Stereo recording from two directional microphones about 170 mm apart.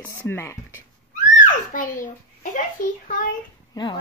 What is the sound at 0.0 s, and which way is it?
Speech, 15° left (ahead or behind).